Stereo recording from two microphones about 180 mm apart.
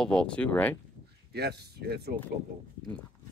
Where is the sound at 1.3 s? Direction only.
65° right (ahead or behind).